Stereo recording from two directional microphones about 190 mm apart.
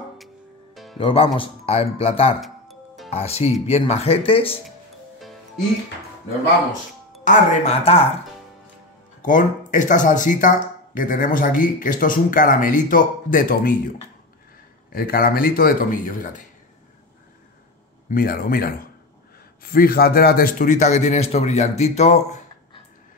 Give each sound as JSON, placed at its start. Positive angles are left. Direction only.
{"t": 0.9, "sound": "speech", "side_deg": 30}
{"t": 2.4, "sound": "music", "side_deg": 0}
{"t": 3.1, "sound": "a man's voice", "side_deg": 35}
{"t": 7.2, "sound": "a man's voice", "side_deg": 35}
{"t": 9.2, "sound": "speech", "side_deg": 45}
{"t": 14.9, "sound": "speech", "side_deg": 50}
{"t": 18.1, "sound": "a man's voice", "side_deg": 50}